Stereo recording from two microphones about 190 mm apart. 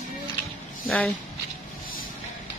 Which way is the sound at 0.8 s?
5° left (ahead or behind).